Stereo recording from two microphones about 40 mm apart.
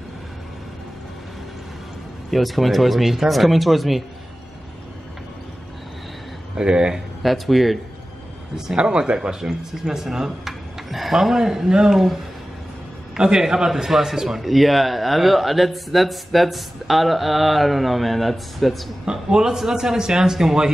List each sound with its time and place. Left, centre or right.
2.3 s speech: centre
6.5 s speech: right
7.2 s speech: centre
8.7 s speech: right
9.4 s speech: centre
13.2 s speech: centre
19.0 s speech: centre